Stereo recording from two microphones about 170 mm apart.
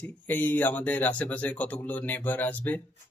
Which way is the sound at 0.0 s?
10° left (ahead or behind).